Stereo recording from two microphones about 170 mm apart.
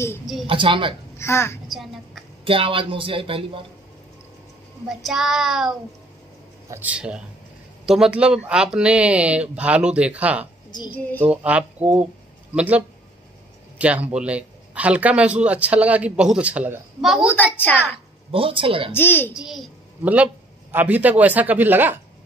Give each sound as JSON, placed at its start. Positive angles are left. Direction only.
{"t": 0.5, "sound": "speech", "side_deg": -30}
{"t": 1.1, "sound": "a child's voice", "side_deg": 15}
{"t": 1.7, "sound": "a woman's voice", "side_deg": 0}
{"t": 2.4, "sound": "speech", "side_deg": -30}
{"t": 4.8, "sound": "child singing", "side_deg": 0}
{"t": 6.7, "sound": "a man's voice", "side_deg": -10}
{"t": 17.7, "sound": "a child's voice", "side_deg": 10}
{"t": 18.3, "sound": "speech", "side_deg": -30}
{"t": 18.9, "sound": "a child's voice", "side_deg": 10}
{"t": 19.3, "sound": "a child's voice", "side_deg": 0}